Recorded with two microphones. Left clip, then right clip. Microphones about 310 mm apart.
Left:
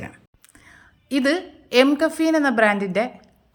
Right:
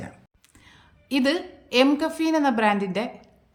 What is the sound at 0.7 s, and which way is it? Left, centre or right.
A woman's voice, centre.